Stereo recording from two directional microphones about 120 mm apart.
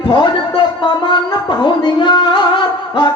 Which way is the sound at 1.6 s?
40° left (ahead or behind).